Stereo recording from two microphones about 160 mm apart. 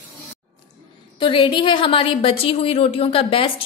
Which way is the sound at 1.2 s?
30° left (ahead or behind).